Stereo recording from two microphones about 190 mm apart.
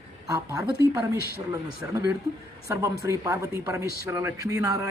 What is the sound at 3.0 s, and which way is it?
A man's voice, 15° right (ahead or behind).